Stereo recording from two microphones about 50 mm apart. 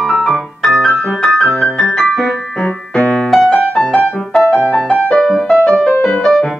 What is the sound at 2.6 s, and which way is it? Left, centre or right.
Piano, left.